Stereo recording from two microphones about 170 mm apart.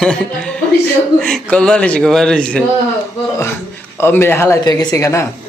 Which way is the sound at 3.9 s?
15° left (ahead or behind).